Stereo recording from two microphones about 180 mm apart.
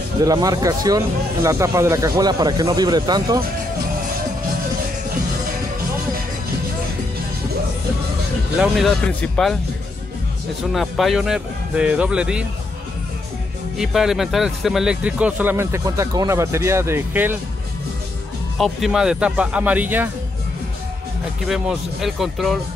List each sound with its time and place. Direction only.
0.2 s speech: 20° right (ahead or behind)
8.5 s speech: centre (ahead or behind)
10.7 s speech: centre (ahead or behind)
13.7 s speech: centre (ahead or behind)
18.6 s speech: centre (ahead or behind)
21.5 s speech: centre (ahead or behind)